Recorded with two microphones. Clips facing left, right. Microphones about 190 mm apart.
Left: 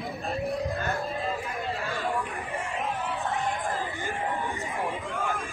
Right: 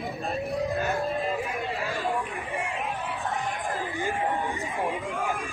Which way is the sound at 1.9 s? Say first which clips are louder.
Right 1 dB; 15° right (ahead or behind).